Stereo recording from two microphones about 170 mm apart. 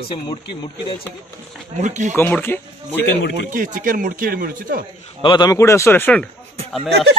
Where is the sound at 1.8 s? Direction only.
45° right (ahead or behind).